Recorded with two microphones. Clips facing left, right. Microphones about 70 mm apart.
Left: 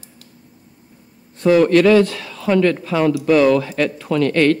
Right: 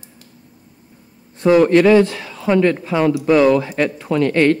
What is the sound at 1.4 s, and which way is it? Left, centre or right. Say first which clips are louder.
Speech: right 1 dB; right.